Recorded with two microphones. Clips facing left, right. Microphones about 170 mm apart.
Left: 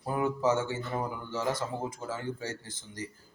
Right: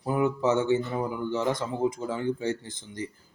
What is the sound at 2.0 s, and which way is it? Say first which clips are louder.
Speech: right 7 dB; 20° right (ahead or behind).